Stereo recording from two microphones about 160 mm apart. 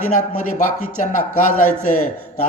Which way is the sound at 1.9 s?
50° left (ahead or behind).